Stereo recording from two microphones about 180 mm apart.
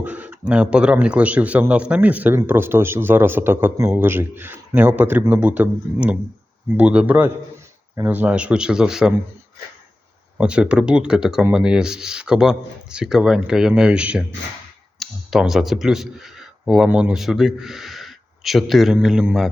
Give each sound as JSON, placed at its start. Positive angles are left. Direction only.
{"t": 0.0, "sound": "a man's voice", "side_deg": -10}
{"t": 10.3, "sound": "speech", "side_deg": -5}